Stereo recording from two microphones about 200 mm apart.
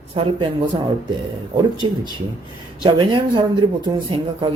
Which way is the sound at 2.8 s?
25° right (ahead or behind).